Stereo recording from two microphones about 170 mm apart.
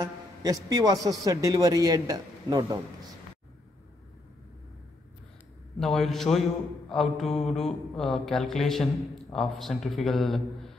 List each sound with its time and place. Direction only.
0.0 s a sound: 20° right (ahead or behind)
0.7 s a man's voice: 20° right (ahead or behind)
5.8 s mantra: centre (ahead or behind)